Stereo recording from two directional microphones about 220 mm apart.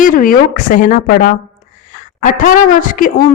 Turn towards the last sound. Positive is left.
turn(degrees=35)  # may be behind; listen again after turning